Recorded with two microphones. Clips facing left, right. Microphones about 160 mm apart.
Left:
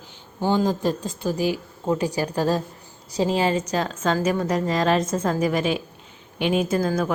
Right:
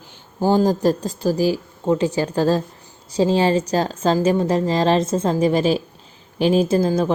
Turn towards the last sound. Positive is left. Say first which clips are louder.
# right 4 dB
turn(degrees=-25)  # may be behind; listen again after turning